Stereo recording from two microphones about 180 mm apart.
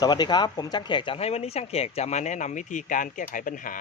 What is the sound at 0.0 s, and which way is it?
Speech, 25° left (ahead or behind).